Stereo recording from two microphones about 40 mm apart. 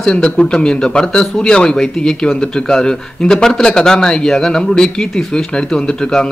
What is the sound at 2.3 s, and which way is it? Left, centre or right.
Speech, centre.